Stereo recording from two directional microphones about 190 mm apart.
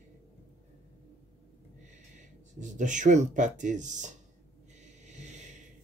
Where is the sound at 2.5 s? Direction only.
40° right (ahead or behind).